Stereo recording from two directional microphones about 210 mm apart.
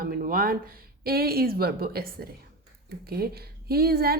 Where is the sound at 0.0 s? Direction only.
45° right (ahead or behind).